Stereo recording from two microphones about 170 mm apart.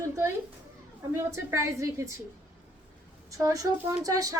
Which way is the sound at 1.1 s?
15° right (ahead or behind).